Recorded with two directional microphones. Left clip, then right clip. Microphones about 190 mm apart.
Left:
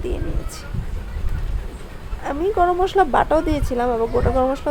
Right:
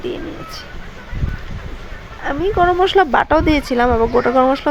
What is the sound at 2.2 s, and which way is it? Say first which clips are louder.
Speech: right 3 dB; 10° right (ahead or behind).